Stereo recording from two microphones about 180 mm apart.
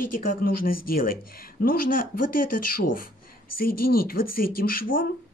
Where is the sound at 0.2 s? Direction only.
50° left (ahead or behind).